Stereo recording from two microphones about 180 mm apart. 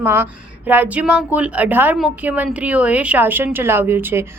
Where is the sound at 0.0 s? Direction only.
10° right (ahead or behind).